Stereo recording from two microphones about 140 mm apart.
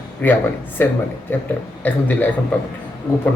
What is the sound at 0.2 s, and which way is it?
Speech, 15° left (ahead or behind).